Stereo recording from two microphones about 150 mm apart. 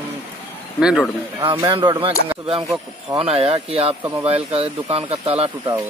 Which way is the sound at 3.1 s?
40° right (ahead or behind).